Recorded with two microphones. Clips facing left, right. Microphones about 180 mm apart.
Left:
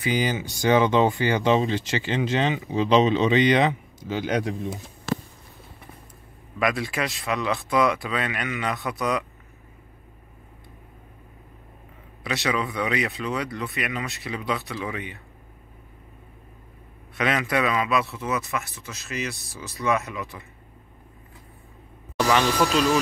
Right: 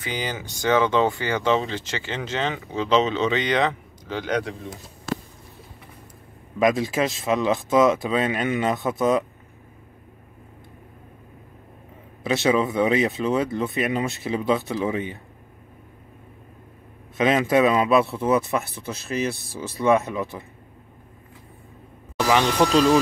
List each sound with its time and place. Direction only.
0.0 s speech: 10° left (ahead or behind)
6.6 s speech: 25° right (ahead or behind)
12.3 s speech: 25° right (ahead or behind)
17.2 s speech: 20° right (ahead or behind)
22.3 s speech: 20° right (ahead or behind)
22.7 s speech: 35° right (ahead or behind)